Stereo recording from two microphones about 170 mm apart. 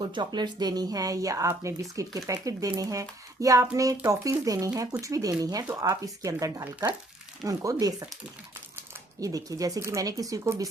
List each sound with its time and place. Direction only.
0.1 s a woman's voice: 25° right (ahead or behind)
9.2 s a woman's voice: 20° right (ahead or behind)